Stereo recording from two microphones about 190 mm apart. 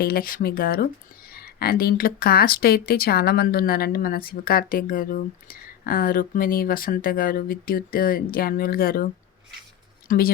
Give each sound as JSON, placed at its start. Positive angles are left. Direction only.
{"t": 0.0, "sound": "speech", "side_deg": 50}
{"t": 10.1, "sound": "speech", "side_deg": 50}